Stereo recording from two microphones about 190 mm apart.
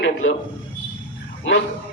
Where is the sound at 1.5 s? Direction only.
90° left.